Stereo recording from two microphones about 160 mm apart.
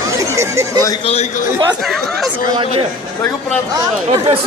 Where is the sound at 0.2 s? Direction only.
20° right (ahead or behind).